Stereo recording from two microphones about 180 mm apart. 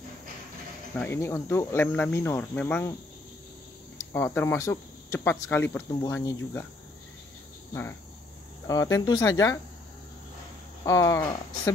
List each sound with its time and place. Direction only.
0.9 s speech: 10° left (ahead or behind)
4.0 s speech: 15° left (ahead or behind)
8.6 s speech: 20° left (ahead or behind)
10.9 s speech: 20° left (ahead or behind)